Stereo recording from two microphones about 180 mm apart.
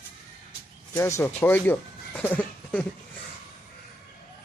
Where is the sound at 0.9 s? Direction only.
15° left (ahead or behind).